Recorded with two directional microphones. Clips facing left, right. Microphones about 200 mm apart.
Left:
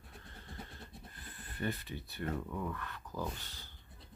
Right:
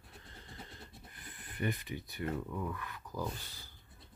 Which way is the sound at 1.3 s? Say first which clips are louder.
Right 1 dB; 15° right (ahead or behind).